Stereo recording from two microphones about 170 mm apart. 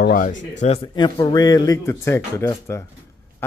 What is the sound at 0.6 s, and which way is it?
Speech, 35° left (ahead or behind).